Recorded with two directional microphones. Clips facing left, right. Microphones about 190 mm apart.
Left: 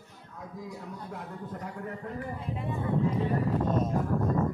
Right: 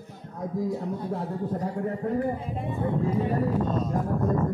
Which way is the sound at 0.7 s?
30° right (ahead or behind).